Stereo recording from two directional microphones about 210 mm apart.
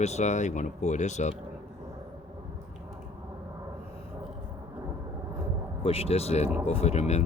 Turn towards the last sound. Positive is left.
turn(degrees=30)  # may be behind; listen again after turning